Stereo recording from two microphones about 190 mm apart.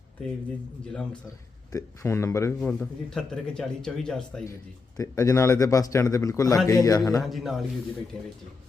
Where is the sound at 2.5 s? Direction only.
5° left (ahead or behind).